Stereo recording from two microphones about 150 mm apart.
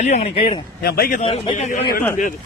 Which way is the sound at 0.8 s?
90° left.